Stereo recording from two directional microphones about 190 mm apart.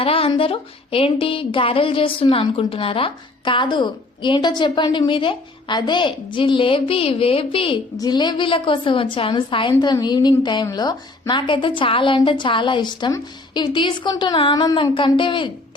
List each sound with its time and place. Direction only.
0.0 s speech: 30° left (ahead or behind)